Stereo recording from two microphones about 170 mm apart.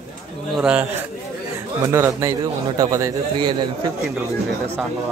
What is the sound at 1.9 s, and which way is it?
A man's voice, 15° right (ahead or behind).